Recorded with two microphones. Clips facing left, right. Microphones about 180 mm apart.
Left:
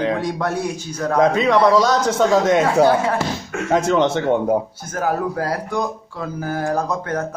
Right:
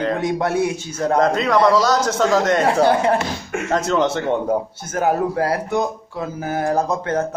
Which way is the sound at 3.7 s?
Centre (ahead or behind).